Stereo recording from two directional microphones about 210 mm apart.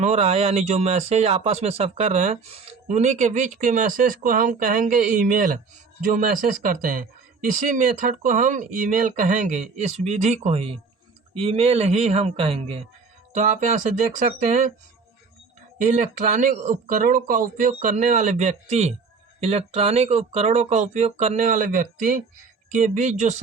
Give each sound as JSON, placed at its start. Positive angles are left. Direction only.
{"t": 0.0, "sound": "speech", "side_deg": -30}
{"t": 15.8, "sound": "speech", "side_deg": -35}